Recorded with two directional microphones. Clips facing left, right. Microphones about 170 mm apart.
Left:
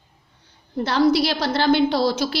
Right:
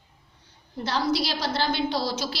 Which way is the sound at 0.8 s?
60° left (ahead or behind).